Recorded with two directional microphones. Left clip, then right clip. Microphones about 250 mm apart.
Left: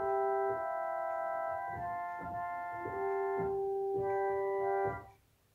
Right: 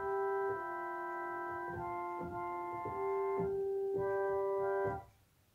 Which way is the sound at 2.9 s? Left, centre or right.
Right.